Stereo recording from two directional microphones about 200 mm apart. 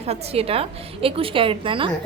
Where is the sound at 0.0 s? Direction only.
30° right (ahead or behind).